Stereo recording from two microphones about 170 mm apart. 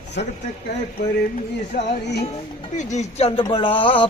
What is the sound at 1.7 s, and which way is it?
Speech, 45° left (ahead or behind).